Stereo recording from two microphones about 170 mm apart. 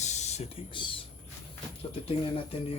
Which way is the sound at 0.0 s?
40° left (ahead or behind).